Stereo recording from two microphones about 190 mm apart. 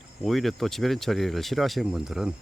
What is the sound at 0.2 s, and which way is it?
Speech, centre (ahead or behind).